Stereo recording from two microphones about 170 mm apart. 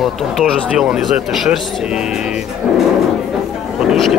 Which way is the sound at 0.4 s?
5° right (ahead or behind).